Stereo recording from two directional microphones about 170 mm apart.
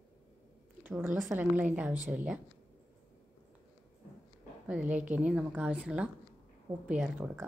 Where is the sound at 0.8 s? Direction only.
10° right (ahead or behind).